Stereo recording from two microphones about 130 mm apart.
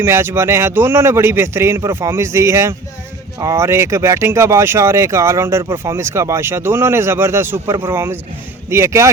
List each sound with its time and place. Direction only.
0.0 s speech: 20° right (ahead or behind)